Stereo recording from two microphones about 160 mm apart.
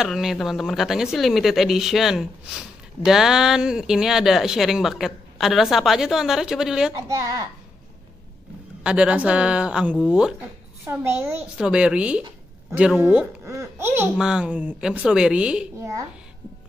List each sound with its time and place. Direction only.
0.0 s speech: centre (ahead or behind)
8.8 s a woman's voice: 5° right (ahead or behind)
14.1 s speech: 5° right (ahead or behind)